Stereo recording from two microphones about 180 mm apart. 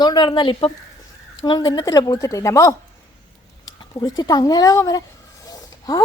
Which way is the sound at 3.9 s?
20° left (ahead or behind).